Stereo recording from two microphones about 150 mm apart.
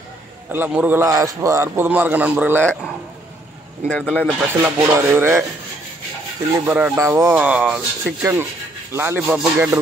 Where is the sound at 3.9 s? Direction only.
5° left (ahead or behind).